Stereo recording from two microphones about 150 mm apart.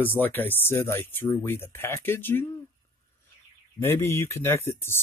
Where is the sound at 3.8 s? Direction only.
15° left (ahead or behind).